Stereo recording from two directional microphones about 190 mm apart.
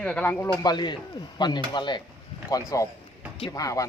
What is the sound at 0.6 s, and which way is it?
Speech, 20° left (ahead or behind).